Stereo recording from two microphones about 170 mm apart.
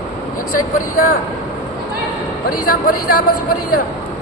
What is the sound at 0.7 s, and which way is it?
Speech, 55° left (ahead or behind).